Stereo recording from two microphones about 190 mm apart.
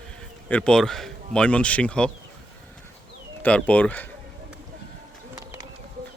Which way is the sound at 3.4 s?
5° left (ahead or behind).